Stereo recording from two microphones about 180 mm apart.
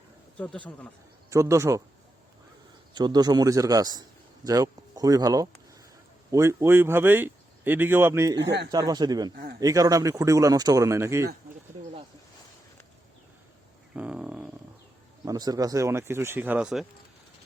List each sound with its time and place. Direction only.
0.3 s speech: 5° left (ahead or behind)
1.3 s speech: 15° right (ahead or behind)
2.9 s speech: 25° right (ahead or behind)
8.4 s speech: 75° right (ahead or behind)
8.7 s speech: 20° right (ahead or behind)
9.3 s a man's voice: 60° right (ahead or behind)
9.6 s speech: 20° right (ahead or behind)
13.9 s a sound: 5° right (ahead or behind)
15.2 s speech: 20° right (ahead or behind); by 16.8 s 5° right (ahead or behind)